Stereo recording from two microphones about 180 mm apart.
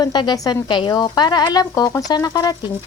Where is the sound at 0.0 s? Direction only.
25° left (ahead or behind).